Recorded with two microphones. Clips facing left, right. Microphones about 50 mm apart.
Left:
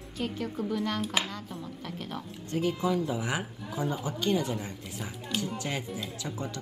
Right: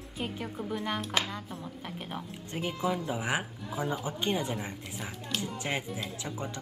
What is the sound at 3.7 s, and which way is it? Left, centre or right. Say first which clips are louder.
Speech: left 1 dB; centre.